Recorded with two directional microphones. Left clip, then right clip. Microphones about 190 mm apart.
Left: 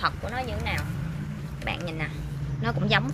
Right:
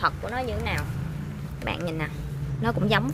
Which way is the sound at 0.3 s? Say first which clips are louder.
Right 2 dB; 50° right (ahead or behind).